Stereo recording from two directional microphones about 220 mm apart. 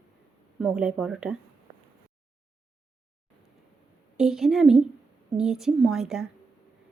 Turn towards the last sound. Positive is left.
turn(degrees=0)  # may be behind; listen again after turning